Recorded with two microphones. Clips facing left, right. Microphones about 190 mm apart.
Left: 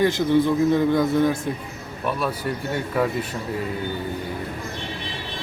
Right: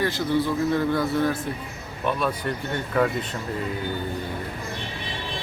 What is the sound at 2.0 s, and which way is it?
A man's voice, 5° left (ahead or behind).